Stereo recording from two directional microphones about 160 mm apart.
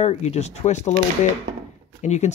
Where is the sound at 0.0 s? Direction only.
45° left (ahead or behind).